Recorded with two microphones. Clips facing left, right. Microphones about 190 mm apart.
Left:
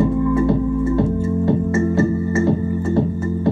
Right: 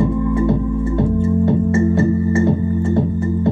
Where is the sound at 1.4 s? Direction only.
25° right (ahead or behind).